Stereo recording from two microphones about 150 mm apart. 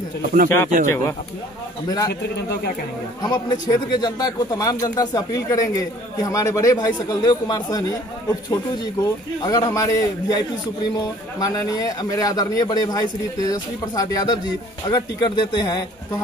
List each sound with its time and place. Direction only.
0.3 s speech: 65° right (ahead or behind)
3.2 s speech: 30° left (ahead or behind)
9.4 s speech: 25° left (ahead or behind)